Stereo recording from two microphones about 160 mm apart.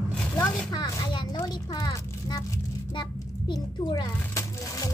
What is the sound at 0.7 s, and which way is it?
A child's voice, 25° left (ahead or behind).